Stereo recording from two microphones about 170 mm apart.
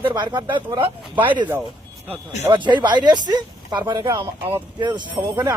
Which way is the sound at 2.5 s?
25° right (ahead or behind).